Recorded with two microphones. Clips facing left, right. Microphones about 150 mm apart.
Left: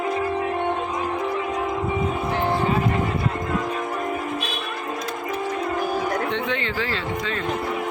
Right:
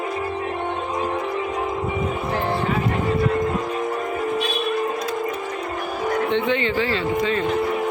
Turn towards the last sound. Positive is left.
turn(degrees=-5)  # may be behind; listen again after turning